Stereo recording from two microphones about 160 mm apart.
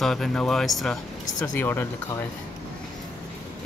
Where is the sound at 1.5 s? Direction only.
15° left (ahead or behind).